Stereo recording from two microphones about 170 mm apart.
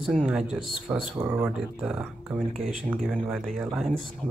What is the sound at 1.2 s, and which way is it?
Speech, 15° right (ahead or behind).